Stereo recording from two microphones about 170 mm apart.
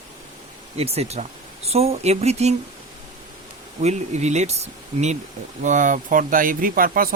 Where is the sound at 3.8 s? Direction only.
40° right (ahead or behind).